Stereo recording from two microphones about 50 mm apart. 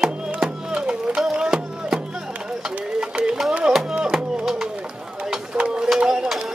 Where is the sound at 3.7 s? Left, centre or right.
Centre.